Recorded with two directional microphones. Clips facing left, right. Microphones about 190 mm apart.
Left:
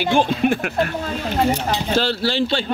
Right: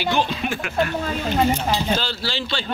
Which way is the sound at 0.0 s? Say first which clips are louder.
Left 5 dB; 50° left (ahead or behind).